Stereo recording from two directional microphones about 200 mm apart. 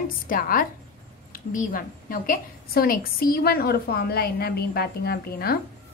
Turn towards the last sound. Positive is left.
turn(degrees=50)  # may be behind; listen again after turning